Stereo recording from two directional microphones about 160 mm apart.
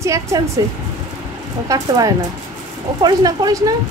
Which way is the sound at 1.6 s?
25° right (ahead or behind).